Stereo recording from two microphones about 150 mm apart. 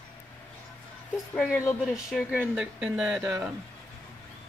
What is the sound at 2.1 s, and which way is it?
Speech, 5° right (ahead or behind).